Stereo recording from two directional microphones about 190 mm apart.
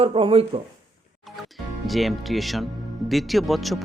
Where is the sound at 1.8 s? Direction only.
Centre (ahead or behind).